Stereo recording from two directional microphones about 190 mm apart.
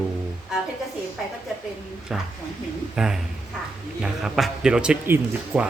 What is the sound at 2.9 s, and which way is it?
Speech, 5° right (ahead or behind).